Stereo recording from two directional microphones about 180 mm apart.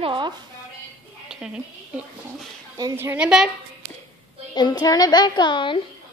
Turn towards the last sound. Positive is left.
turn(degrees=25)  # may be behind; listen again after turning